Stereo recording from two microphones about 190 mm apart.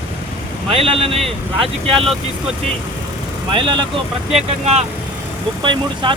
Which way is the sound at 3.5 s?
25° right (ahead or behind).